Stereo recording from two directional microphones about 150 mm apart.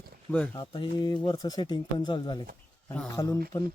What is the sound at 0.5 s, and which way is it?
Speech, 30° left (ahead or behind).